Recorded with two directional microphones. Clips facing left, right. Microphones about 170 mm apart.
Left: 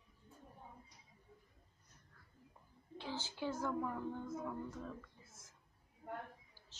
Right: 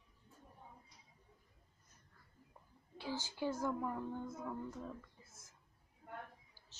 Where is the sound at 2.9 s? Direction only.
10° right (ahead or behind).